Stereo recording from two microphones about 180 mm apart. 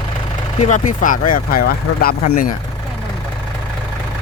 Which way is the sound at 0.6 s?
45° left (ahead or behind).